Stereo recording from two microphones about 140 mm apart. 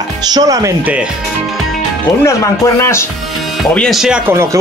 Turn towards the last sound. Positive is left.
turn(degrees=5)  # may be behind; listen again after turning